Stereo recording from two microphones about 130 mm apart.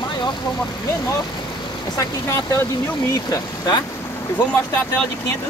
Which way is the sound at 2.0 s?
25° left (ahead or behind).